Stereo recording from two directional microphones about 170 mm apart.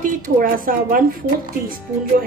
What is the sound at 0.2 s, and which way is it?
Speech, 55° right (ahead or behind).